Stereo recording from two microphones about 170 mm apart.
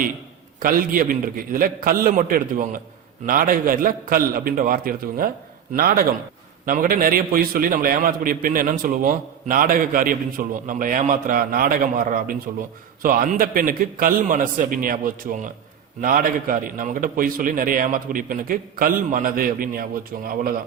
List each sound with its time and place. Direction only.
0.6 s a man's voice: 55° right (ahead or behind)